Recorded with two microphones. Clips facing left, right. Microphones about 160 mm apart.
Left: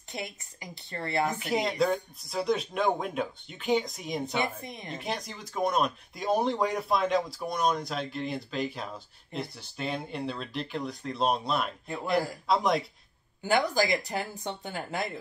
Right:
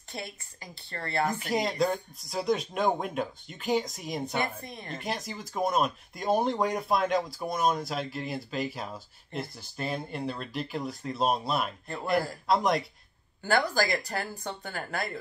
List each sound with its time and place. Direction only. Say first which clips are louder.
0.1 s speech: left 1 dB; 20° left (ahead or behind)
1.2 s speech: right 1 dB; centre (ahead or behind)
4.4 s a woman's voice: left 1 dB; 20° left (ahead or behind)
4.9 s speech: right 1 dB; centre (ahead or behind)
13.4 s speech: left 1 dB; 15° left (ahead or behind)